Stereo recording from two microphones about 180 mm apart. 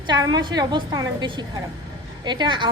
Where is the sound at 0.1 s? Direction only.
25° right (ahead or behind).